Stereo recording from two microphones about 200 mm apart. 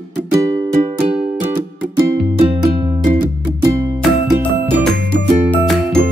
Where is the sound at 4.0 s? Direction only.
Centre (ahead or behind).